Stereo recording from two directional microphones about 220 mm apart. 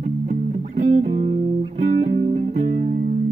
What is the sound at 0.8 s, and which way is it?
Music, 30° right (ahead or behind).